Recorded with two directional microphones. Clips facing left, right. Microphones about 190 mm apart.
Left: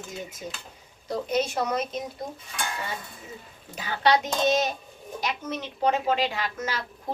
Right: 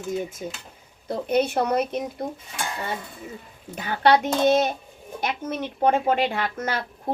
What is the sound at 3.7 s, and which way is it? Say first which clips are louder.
Speech: right 4 dB; 55° right (ahead or behind).